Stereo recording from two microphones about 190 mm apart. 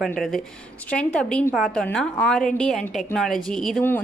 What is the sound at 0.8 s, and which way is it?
Speech, 5° left (ahead or behind).